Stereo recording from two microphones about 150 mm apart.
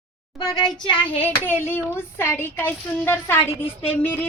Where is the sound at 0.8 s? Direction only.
35° left (ahead or behind).